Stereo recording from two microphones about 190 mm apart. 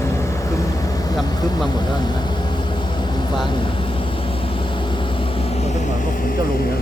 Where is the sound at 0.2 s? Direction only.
15° left (ahead or behind).